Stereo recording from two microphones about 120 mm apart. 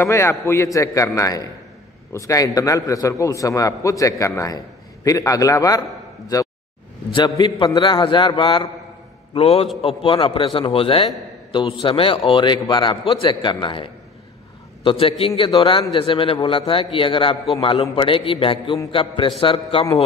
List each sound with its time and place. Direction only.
0.0 s a man's voice: 20° left (ahead or behind); by 8.6 s 40° left (ahead or behind)
9.3 s a man's voice: 55° left (ahead or behind)